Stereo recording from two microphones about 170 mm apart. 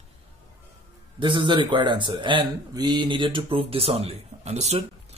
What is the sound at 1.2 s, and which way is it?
Speech, 30° right (ahead or behind).